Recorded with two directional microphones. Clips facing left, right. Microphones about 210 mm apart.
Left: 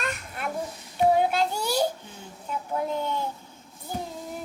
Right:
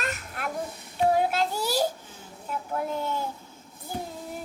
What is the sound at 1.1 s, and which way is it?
Child singing, centre (ahead or behind).